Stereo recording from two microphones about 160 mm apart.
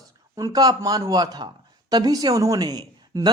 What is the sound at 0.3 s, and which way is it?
Speech, 20° right (ahead or behind).